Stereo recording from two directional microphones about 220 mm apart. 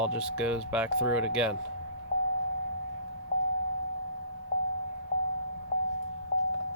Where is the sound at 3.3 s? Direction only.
25° left (ahead or behind).